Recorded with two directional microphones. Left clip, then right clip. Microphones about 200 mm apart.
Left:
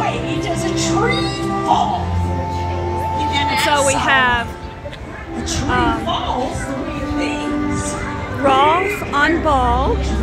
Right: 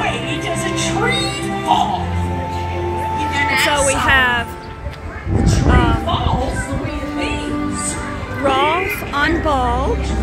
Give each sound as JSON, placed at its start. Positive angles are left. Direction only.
{"t": 0.7, "sound": "music", "side_deg": -5}
{"t": 3.6, "sound": "music", "side_deg": 0}
{"t": 4.0, "sound": "speech", "side_deg": 0}
{"t": 5.7, "sound": "a sound", "side_deg": 0}
{"t": 8.5, "sound": "speech", "side_deg": 5}